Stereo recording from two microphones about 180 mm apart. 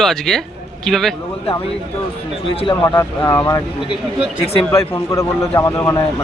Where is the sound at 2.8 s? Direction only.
20° left (ahead or behind).